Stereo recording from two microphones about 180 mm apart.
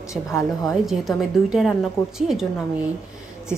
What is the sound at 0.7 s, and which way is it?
A woman's voice, centre (ahead or behind).